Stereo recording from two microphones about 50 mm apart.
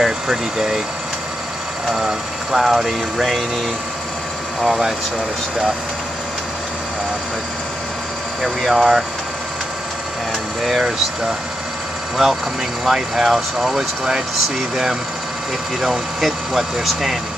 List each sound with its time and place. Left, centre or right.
0.0 s speech: centre
1.9 s speech: centre
4.6 s speech: centre
8.4 s speech: centre
12.2 s speech: centre
15.8 s speech: centre